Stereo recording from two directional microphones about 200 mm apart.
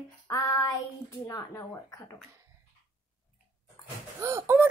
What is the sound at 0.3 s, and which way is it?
Speech, 15° left (ahead or behind).